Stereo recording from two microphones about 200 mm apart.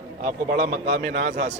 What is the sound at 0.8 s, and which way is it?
Speech, 55° right (ahead or behind).